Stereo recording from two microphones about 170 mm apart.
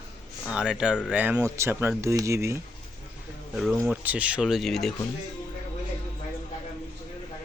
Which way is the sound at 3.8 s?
10° right (ahead or behind).